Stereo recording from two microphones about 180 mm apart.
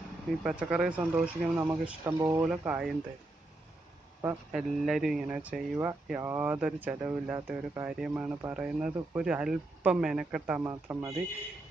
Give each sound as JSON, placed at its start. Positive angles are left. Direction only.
{"t": 0.4, "sound": "speech", "side_deg": -5}
{"t": 2.4, "sound": "speech", "side_deg": -5}
{"t": 4.5, "sound": "speech", "side_deg": -5}
{"t": 10.7, "sound": "speech", "side_deg": -15}